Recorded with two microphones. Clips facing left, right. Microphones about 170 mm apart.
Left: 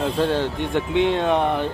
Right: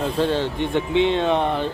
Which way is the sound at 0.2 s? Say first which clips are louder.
Right 2 dB; 10° left (ahead or behind).